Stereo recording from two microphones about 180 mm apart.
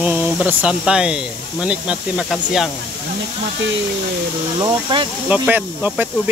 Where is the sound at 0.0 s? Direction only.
5° right (ahead or behind).